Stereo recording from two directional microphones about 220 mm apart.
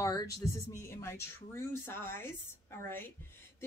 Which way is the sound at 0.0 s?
15° left (ahead or behind).